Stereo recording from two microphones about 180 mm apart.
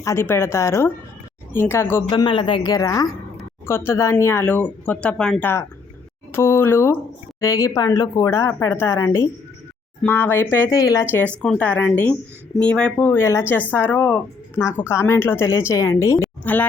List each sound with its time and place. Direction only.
0.0 s speech: 15° left (ahead or behind)
2.0 s a woman's voice: 25° left (ahead or behind); by 16.6 s 10° left (ahead or behind)